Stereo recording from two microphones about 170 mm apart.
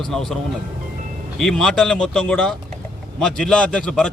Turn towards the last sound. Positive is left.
turn(degrees=5)  # may be behind; listen again after turning